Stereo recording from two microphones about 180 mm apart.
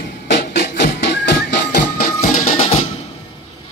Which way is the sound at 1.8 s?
45° left (ahead or behind).